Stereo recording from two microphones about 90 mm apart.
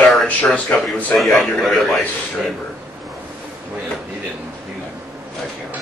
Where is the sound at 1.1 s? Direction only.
5° left (ahead or behind).